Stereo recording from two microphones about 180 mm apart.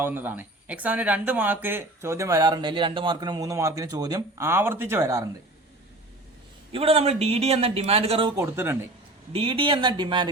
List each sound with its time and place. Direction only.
0.0 s speech: 10° right (ahead or behind)
6.7 s a man's voice: 30° right (ahead or behind)
8.4 s speech: 15° right (ahead or behind)
9.3 s speech: 30° right (ahead or behind)